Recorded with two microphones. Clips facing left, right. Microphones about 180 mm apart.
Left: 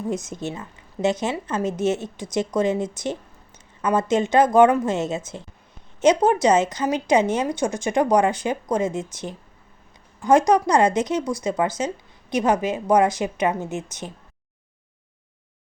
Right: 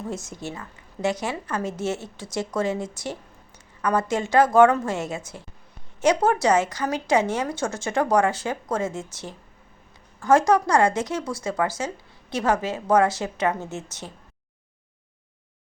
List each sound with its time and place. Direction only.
0.1 s a woman's voice: 20° left (ahead or behind)